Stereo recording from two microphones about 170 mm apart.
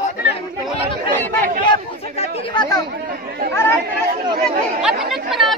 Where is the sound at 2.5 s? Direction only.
25° left (ahead or behind).